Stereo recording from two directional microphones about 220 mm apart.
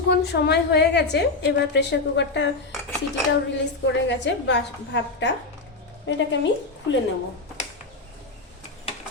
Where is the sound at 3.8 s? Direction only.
55° left (ahead or behind).